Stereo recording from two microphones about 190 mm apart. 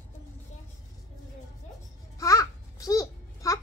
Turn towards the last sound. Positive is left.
turn(degrees=15)  # may be behind; listen again after turning